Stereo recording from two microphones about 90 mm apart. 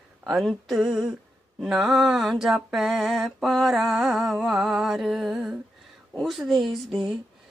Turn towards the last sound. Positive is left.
turn(degrees=0)  # may be behind; listen again after turning